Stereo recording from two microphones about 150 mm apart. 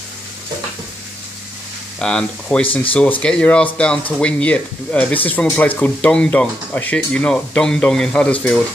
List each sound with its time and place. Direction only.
2.0 s speech: 5° left (ahead or behind)